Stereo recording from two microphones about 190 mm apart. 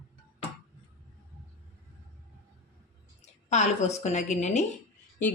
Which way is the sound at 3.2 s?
35° left (ahead or behind).